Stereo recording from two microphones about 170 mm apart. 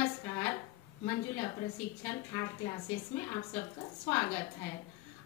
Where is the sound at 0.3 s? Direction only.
15° left (ahead or behind).